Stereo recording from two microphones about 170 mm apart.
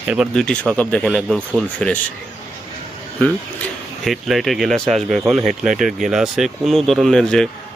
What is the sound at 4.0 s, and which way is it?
Speech, centre (ahead or behind).